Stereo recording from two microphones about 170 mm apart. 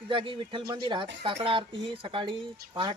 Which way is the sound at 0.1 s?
30° right (ahead or behind).